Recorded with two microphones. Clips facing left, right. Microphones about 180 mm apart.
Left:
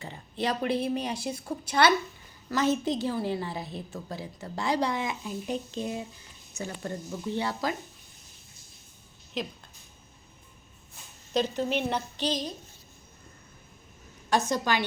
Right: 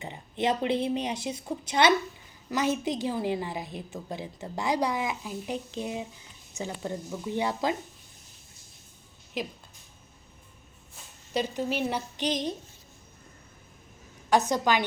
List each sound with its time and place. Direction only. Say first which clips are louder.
0.0 s a woman's voice: right 2 dB; 20° right (ahead or behind)
9.4 s a woman's voice: even; 10° right (ahead or behind)
11.3 s a woman's voice: left 1 dB; 10° right (ahead or behind)
14.5 s a woman's voice: right 2 dB; 15° right (ahead or behind)